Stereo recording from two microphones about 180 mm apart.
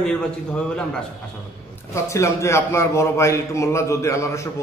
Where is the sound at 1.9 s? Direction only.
15° left (ahead or behind).